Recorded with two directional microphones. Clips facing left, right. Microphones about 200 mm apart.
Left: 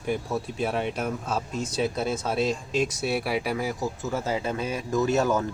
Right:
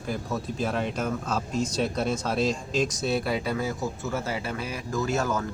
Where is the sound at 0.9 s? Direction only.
10° left (ahead or behind).